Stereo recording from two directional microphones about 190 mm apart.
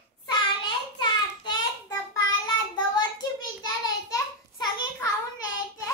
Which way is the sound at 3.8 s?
20° left (ahead or behind).